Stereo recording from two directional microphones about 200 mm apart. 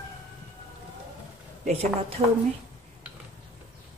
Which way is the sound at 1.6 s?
30° right (ahead or behind).